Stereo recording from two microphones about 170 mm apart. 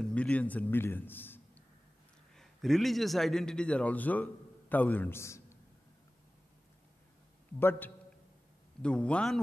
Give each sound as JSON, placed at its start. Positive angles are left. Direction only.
{"t": 0.0, "sound": "a man's voice", "side_deg": 5}
{"t": 2.3, "sound": "a man's voice", "side_deg": 0}
{"t": 7.5, "sound": "a man's voice", "side_deg": 10}